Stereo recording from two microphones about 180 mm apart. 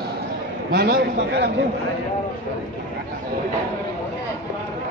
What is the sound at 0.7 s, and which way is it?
Speech, 65° right (ahead or behind).